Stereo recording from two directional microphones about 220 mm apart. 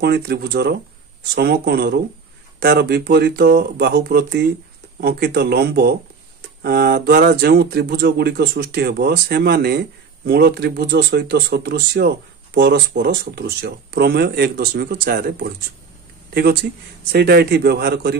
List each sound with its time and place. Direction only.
0.0 s speech: 45° right (ahead or behind)
17.1 s speech: 45° right (ahead or behind)